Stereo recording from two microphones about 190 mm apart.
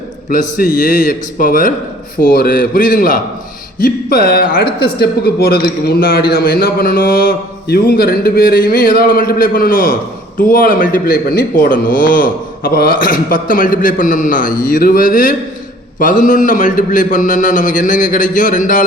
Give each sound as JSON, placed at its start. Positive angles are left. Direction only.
{"t": 0.3, "sound": "a man's voice", "side_deg": 45}